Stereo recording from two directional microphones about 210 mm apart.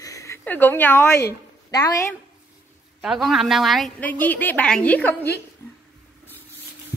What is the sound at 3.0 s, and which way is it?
A woman's voice, centre (ahead or behind).